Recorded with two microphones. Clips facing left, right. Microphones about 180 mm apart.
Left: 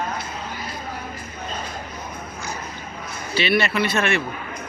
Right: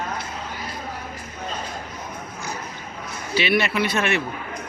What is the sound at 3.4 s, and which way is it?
Speech, 15° right (ahead or behind).